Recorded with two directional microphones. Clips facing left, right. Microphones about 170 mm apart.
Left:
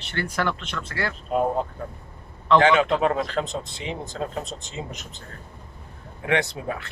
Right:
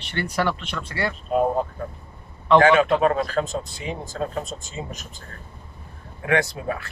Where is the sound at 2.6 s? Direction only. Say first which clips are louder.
Right 3 dB; 20° left (ahead or behind).